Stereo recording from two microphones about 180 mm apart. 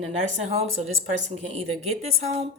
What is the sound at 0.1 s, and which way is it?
A woman's voice, 40° right (ahead or behind).